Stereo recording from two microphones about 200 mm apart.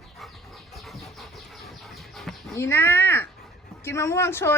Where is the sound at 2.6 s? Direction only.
10° left (ahead or behind).